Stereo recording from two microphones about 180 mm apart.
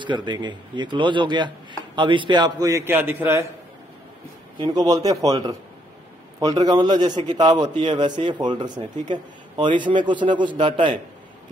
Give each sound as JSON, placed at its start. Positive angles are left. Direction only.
{"t": 0.0, "sound": "speech", "side_deg": -25}
{"t": 4.6, "sound": "speech", "side_deg": -20}